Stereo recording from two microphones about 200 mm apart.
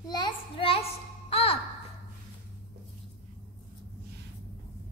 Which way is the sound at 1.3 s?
30° left (ahead or behind).